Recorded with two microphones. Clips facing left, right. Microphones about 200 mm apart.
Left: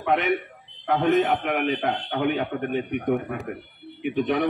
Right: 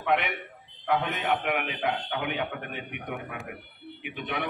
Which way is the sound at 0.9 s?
45° left (ahead or behind).